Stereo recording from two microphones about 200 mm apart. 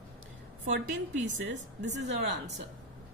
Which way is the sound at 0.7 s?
70° right (ahead or behind).